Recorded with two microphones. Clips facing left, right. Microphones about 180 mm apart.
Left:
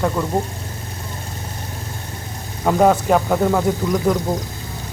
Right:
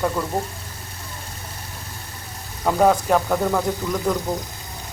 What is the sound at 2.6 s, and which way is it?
Speech, 5° left (ahead or behind).